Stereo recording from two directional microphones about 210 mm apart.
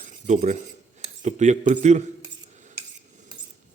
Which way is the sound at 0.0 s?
35° right (ahead or behind).